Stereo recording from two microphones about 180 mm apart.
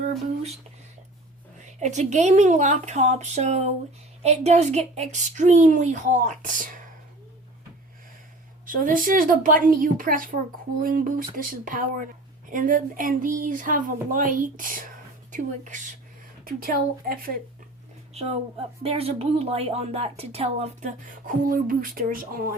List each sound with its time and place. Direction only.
1.6 s speech: 40° right (ahead or behind)
8.6 s speech: 50° right (ahead or behind)
16.4 s speech: 55° right (ahead or behind)
18.1 s speech: 35° right (ahead or behind); by 22.5 s 55° right (ahead or behind)